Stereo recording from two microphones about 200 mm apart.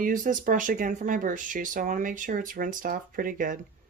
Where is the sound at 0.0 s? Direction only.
40° right (ahead or behind).